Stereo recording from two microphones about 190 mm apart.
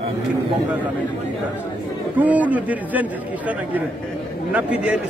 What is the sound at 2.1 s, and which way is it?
A man's voice, 10° right (ahead or behind).